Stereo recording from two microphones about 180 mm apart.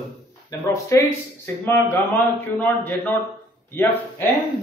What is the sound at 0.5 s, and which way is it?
Speech, 15° left (ahead or behind).